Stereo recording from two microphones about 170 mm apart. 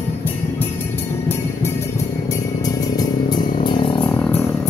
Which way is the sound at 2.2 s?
20° left (ahead or behind).